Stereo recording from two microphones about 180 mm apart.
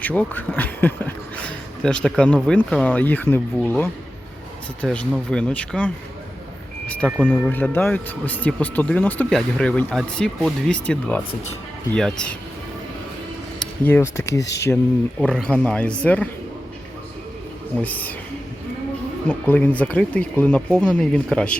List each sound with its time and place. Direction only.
0.0 s speech: 10° left (ahead or behind)
13.6 s speech: 10° left (ahead or behind)
14.4 s speech: 80° left
15.2 s speech: 5° left (ahead or behind)
17.7 s speech: 10° left (ahead or behind)
19.3 s speech: 10° left (ahead or behind)